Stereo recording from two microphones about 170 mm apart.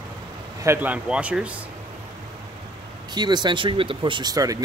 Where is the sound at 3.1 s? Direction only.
25° right (ahead or behind).